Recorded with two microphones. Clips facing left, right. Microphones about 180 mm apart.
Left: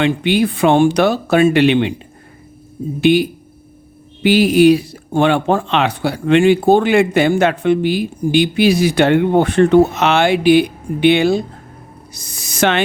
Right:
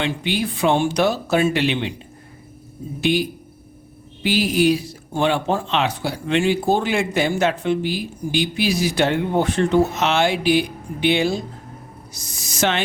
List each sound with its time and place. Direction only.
0.0 s speech: 60° left (ahead or behind)
3.0 s speech: 60° left (ahead or behind)